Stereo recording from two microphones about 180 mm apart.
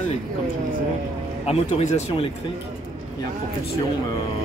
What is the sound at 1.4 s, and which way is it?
Speech, 35° left (ahead or behind).